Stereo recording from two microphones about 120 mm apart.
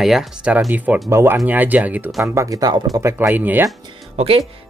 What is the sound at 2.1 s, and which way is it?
Speech, 25° right (ahead or behind).